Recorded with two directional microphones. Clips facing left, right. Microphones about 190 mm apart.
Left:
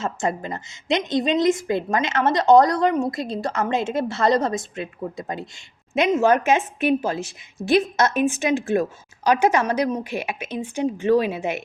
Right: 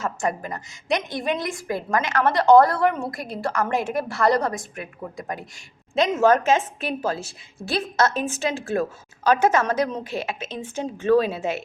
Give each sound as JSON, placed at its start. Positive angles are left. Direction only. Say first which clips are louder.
{"t": 0.0, "sound": "a woman's voice", "louder": "left 1 dB", "side_deg": 25}
{"t": 5.9, "sound": "a woman's voice", "louder": "even", "side_deg": 15}